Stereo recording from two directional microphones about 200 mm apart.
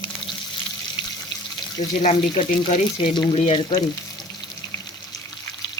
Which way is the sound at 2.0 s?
30° left (ahead or behind).